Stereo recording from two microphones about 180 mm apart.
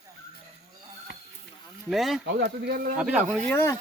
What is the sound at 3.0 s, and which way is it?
Speech, 5° right (ahead or behind).